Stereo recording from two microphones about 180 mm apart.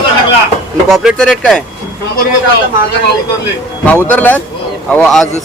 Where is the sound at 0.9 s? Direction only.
Centre (ahead or behind).